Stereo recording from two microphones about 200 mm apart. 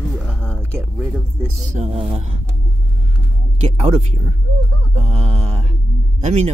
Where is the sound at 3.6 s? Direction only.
30° right (ahead or behind).